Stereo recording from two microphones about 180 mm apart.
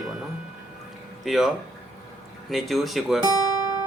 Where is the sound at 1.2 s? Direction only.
Centre (ahead or behind).